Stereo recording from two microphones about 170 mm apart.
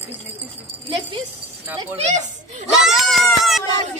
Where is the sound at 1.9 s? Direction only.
45° right (ahead or behind).